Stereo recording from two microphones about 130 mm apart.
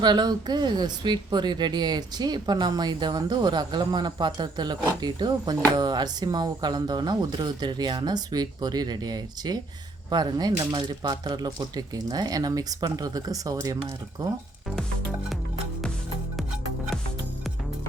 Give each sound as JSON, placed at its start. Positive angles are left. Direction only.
{"t": 0.0, "sound": "speech", "side_deg": -35}